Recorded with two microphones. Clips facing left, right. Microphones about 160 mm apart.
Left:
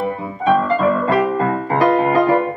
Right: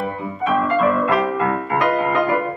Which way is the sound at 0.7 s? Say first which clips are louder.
Left 1 dB; 35° left (ahead or behind).